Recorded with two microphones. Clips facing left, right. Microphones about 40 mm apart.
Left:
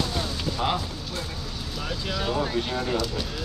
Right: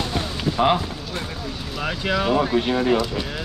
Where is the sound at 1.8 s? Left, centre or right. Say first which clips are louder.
Right 8 dB; right.